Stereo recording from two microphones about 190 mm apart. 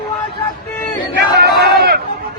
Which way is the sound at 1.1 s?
60° right (ahead or behind).